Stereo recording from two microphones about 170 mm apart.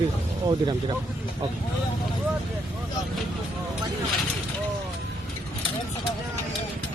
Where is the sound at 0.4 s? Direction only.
25° right (ahead or behind).